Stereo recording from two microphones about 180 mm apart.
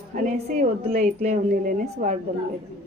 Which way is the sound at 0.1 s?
45° right (ahead or behind).